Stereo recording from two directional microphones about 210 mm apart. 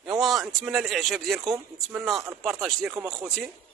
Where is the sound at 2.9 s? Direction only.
15° right (ahead or behind).